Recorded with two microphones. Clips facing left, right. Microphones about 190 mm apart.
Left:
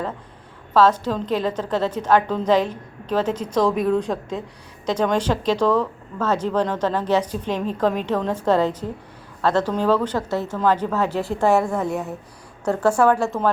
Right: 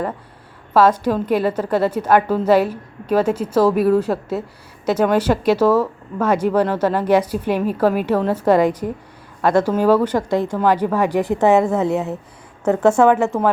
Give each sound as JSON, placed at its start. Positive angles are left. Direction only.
{"t": 0.7, "sound": "speech", "side_deg": -10}